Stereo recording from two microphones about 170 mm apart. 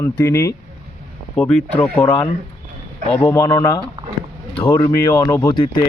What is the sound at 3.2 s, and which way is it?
Speech, 15° left (ahead or behind).